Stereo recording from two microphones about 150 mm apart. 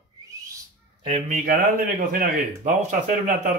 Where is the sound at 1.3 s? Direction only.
60° right (ahead or behind).